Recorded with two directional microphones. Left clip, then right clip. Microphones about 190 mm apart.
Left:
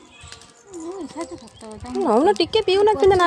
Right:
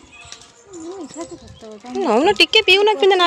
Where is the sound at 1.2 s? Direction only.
25° left (ahead or behind).